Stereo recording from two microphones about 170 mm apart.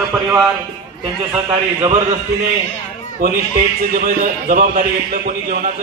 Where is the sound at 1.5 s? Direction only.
30° right (ahead or behind).